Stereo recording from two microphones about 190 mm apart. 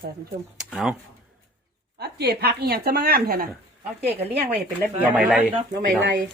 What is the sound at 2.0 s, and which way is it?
Speech, 60° right (ahead or behind).